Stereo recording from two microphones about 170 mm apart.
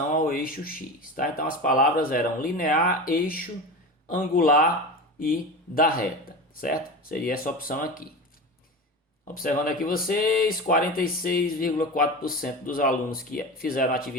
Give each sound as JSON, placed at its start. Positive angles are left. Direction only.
{"t": 0.2, "sound": "speech", "side_deg": 55}
{"t": 9.2, "sound": "speech", "side_deg": 55}